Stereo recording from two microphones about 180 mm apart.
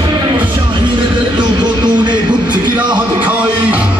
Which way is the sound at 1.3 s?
25° right (ahead or behind).